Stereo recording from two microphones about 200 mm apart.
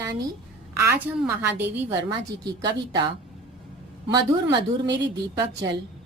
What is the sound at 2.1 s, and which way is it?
Speech, 20° right (ahead or behind).